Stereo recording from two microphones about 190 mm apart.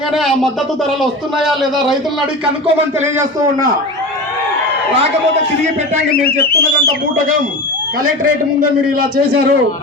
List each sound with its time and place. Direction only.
0.1 s speech: centre (ahead or behind)
6.2 s whistle: 55° left (ahead or behind)
9.0 s a man's voice: 50° right (ahead or behind)